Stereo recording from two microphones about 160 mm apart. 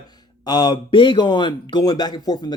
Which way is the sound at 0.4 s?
25° left (ahead or behind).